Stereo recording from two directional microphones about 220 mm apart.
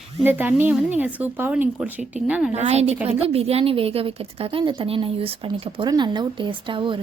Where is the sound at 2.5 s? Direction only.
30° right (ahead or behind).